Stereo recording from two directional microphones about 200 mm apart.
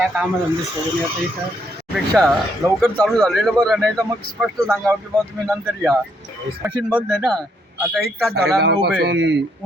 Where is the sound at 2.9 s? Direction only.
Centre (ahead or behind).